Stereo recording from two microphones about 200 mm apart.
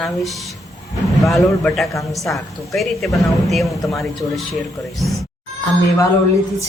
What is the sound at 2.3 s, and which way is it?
Speech, centre (ahead or behind).